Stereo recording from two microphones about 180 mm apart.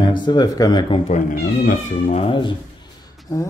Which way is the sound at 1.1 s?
45° left (ahead or behind).